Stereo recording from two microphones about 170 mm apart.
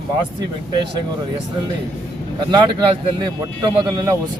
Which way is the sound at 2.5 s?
30° right (ahead or behind).